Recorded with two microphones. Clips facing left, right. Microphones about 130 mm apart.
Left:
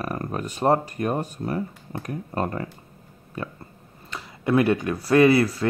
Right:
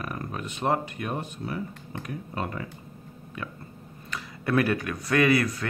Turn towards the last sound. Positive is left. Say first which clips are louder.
# left 6 dB
turn(degrees=30)  # may be behind; listen again after turning